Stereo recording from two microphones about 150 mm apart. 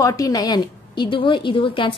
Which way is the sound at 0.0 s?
20° left (ahead or behind).